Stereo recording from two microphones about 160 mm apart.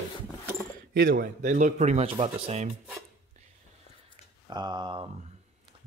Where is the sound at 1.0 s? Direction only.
65° right (ahead or behind); by 2.6 s 35° right (ahead or behind).